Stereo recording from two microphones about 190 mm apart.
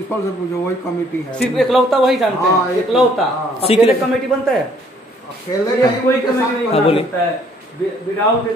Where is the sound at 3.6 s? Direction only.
30° left (ahead or behind).